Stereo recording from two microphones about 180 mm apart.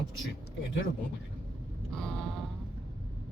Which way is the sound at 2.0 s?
5° left (ahead or behind).